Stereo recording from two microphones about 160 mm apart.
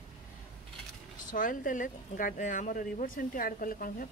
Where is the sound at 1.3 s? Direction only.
55° left (ahead or behind).